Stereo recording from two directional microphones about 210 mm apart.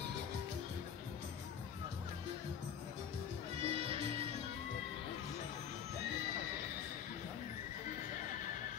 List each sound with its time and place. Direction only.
3.6 s music: 25° right (ahead or behind)